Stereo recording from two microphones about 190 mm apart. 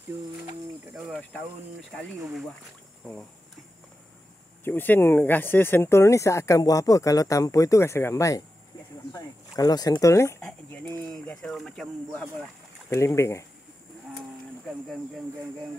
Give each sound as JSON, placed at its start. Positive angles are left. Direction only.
{"t": 0.9, "sound": "cricket", "side_deg": -5}
{"t": 4.6, "sound": "speech", "side_deg": 10}
{"t": 12.9, "sound": "speech", "side_deg": 15}